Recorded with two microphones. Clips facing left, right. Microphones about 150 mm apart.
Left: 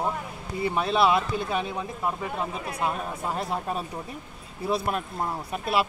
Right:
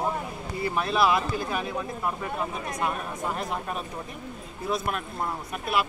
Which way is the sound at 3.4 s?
30° left (ahead or behind).